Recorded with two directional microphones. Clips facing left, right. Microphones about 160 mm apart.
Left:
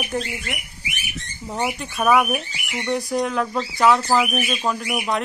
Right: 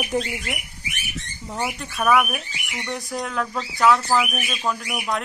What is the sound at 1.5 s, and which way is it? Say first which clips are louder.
Speech: left 3 dB; 20° left (ahead or behind).